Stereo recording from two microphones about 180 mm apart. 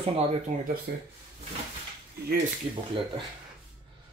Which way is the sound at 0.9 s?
65° right (ahead or behind).